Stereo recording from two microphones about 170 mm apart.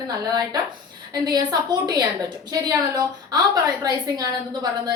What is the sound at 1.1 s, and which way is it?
A woman's voice, 25° right (ahead or behind).